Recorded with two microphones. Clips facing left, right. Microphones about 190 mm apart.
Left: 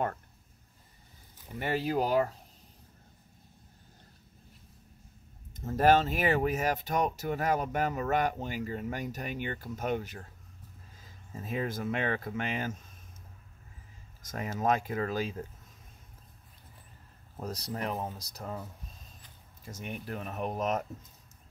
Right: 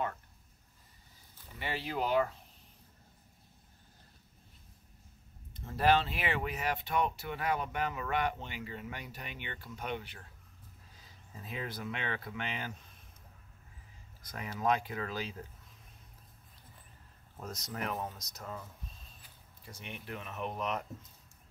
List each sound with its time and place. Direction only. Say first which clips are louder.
1.6 s speech: left 6 dB; 45° left (ahead or behind)
5.6 s speech: left 4 dB; 45° left (ahead or behind)
11.3 s speech: left 7 dB; 45° left (ahead or behind)
14.2 s speech: left 3 dB; 45° left (ahead or behind)
17.4 s speech: left 4 dB; 35° left (ahead or behind)
19.6 s speech: left 7 dB; 45° left (ahead or behind)